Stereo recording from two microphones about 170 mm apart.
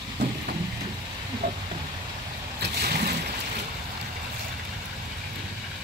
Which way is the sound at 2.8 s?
65° right (ahead or behind).